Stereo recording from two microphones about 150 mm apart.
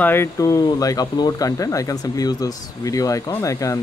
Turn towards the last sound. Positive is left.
turn(degrees=20)  # may be behind; listen again after turning